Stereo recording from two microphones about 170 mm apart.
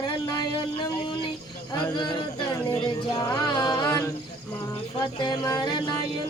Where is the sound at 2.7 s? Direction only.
25° left (ahead or behind).